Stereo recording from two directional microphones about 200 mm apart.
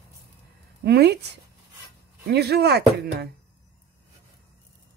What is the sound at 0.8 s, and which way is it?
Speech, 55° right (ahead or behind).